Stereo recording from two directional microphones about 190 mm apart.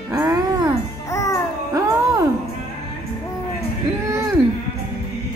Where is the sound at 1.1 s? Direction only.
15° left (ahead or behind).